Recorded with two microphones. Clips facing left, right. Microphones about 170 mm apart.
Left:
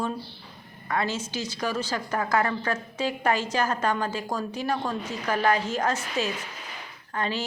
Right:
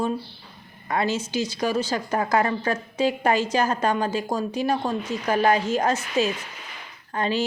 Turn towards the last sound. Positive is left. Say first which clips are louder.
# right 5 dB
turn(degrees=-20)  # may be behind; listen again after turning